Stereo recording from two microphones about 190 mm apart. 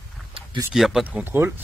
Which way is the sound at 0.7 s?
Centre (ahead or behind).